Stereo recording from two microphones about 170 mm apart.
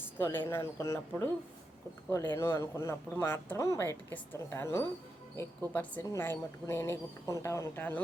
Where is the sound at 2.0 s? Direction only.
15° left (ahead or behind).